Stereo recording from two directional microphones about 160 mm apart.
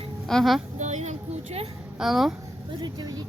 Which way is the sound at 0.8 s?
45° right (ahead or behind).